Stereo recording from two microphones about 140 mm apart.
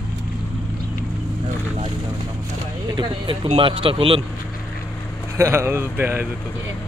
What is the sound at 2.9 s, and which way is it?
Speech, 35° right (ahead or behind).